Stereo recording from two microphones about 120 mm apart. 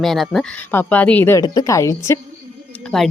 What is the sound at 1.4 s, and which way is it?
Speech, 30° left (ahead or behind).